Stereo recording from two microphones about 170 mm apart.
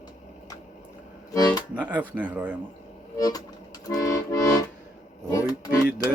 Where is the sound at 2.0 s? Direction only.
10° right (ahead or behind).